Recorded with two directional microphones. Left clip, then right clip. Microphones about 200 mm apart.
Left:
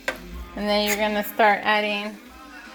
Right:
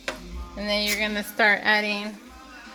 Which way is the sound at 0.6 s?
25° left (ahead or behind).